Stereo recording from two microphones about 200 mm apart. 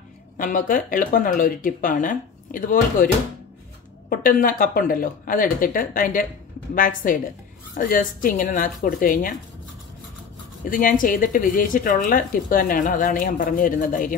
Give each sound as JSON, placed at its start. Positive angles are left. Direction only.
{"t": 0.4, "sound": "a woman's voice", "side_deg": 45}
{"t": 4.1, "sound": "a woman's voice", "side_deg": 45}
{"t": 10.6, "sound": "a woman's voice", "side_deg": 45}